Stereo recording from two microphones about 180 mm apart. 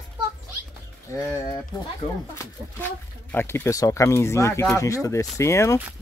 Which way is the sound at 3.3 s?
15° left (ahead or behind).